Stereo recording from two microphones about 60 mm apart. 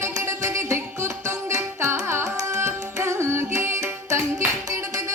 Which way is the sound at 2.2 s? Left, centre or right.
Right.